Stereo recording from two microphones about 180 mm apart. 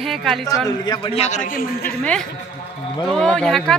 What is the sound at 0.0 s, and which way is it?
Speech, centre (ahead or behind).